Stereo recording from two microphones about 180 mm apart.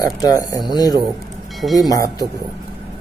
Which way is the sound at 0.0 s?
20° left (ahead or behind).